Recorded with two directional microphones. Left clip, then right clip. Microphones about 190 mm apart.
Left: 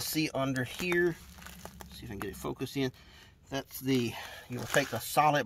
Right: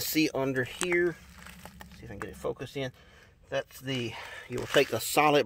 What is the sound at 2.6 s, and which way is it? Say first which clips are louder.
Speech: left 2 dB; 20° right (ahead or behind).